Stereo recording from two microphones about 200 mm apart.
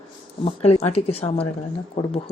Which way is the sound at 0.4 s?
30° left (ahead or behind).